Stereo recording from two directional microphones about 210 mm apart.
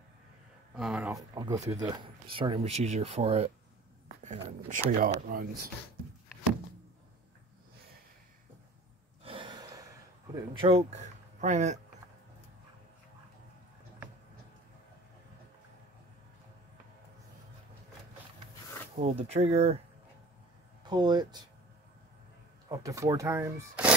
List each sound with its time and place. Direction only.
0.7 s speech: 5° right (ahead or behind)
1.3 s speech: 20° right (ahead or behind); by 5.5 s 45° right (ahead or behind)
9.2 s gasp: 25° right (ahead or behind)
10.3 s speech: 25° right (ahead or behind)
18.9 s speech: 30° right (ahead or behind)
20.8 s speech: 20° right (ahead or behind)
22.7 s speech: 15° right (ahead or behind)